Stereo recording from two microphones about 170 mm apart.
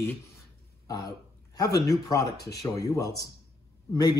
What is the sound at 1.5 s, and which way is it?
Speech, 20° left (ahead or behind).